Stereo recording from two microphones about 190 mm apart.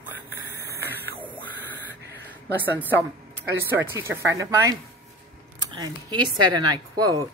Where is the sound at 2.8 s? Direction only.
10° right (ahead or behind).